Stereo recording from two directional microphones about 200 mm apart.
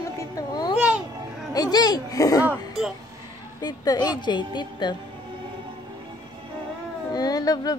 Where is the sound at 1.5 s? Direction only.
20° left (ahead or behind).